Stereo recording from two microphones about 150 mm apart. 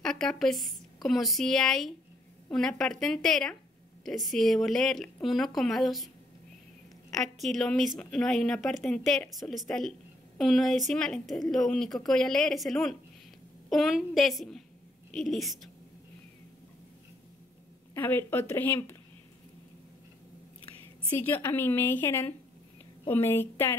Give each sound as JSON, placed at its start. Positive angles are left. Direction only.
{"t": 0.0, "sound": "a woman's voice", "side_deg": 5}
{"t": 7.2, "sound": "a woman's voice", "side_deg": 0}
{"t": 17.9, "sound": "a woman's voice", "side_deg": 15}
{"t": 21.1, "sound": "a woman's voice", "side_deg": 15}